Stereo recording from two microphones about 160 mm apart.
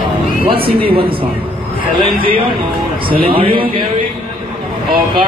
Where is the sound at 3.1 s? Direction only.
65° right (ahead or behind).